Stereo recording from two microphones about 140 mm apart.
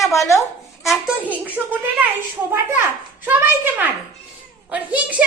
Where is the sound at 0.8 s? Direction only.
10° right (ahead or behind).